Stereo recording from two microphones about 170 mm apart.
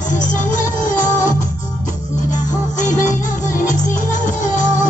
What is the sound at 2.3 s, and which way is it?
Music, 45° left (ahead or behind).